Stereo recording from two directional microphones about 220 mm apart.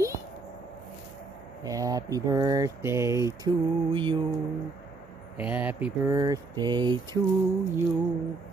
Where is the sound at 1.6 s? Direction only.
15° right (ahead or behind).